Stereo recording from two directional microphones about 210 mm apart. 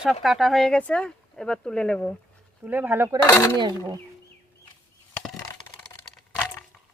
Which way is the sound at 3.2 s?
15° left (ahead or behind).